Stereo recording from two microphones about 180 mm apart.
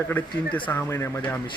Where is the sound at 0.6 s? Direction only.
15° left (ahead or behind).